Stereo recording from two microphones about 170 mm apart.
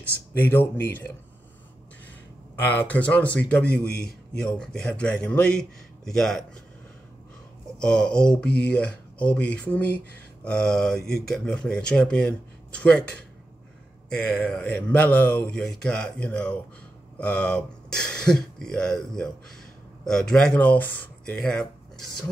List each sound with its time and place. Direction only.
0.0 s speech: 10° left (ahead or behind)
2.7 s speech: 10° left (ahead or behind)
7.8 s speech: 5° left (ahead or behind)